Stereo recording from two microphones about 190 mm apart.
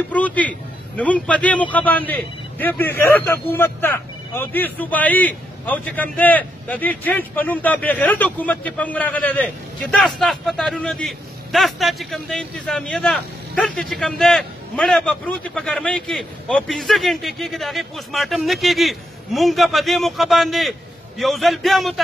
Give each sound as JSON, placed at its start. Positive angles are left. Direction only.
{"t": 0.1, "sound": "a man's voice", "side_deg": 10}